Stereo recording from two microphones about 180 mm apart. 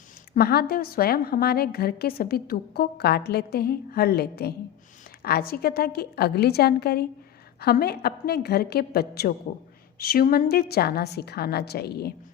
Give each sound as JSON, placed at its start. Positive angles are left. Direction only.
{"t": 0.3, "sound": "a woman's voice", "side_deg": 60}